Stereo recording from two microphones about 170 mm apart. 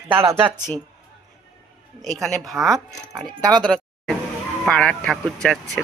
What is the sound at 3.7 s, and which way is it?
Speech, 5° left (ahead or behind).